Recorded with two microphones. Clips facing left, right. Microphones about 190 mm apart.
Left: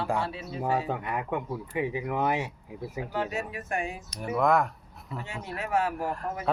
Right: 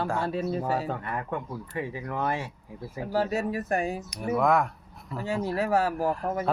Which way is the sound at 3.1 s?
35° right (ahead or behind).